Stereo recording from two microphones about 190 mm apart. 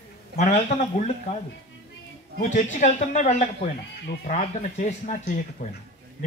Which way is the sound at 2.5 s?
40° left (ahead or behind).